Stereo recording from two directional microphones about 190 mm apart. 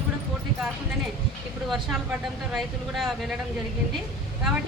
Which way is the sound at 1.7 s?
Centre (ahead or behind).